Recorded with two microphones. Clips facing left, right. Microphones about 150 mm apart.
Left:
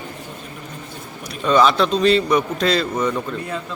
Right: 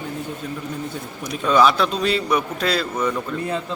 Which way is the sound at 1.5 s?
5° right (ahead or behind).